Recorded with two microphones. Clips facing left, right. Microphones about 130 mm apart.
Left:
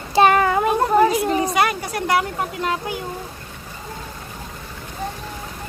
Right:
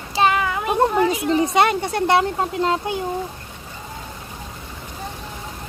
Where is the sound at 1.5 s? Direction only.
25° right (ahead or behind).